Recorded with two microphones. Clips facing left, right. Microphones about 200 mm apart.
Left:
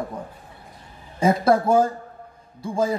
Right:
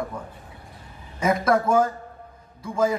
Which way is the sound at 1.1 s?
30° left (ahead or behind).